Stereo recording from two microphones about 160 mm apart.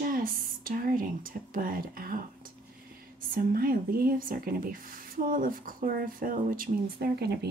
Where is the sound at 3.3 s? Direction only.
65° right (ahead or behind).